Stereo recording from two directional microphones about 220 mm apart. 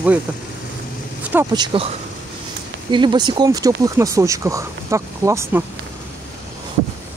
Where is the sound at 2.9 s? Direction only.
20° right (ahead or behind).